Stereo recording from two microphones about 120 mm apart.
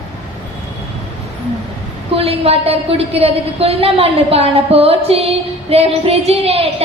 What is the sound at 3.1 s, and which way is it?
A woman's voice, 55° right (ahead or behind).